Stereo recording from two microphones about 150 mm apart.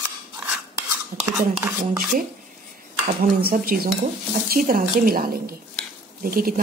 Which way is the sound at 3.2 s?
85° right.